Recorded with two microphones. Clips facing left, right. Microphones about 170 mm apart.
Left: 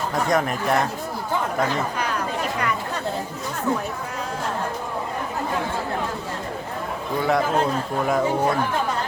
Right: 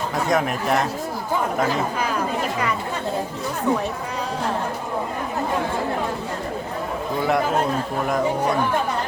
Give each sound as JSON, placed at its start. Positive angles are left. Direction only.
{"t": 0.3, "sound": "speech", "side_deg": 0}
{"t": 3.7, "sound": "speech", "side_deg": 0}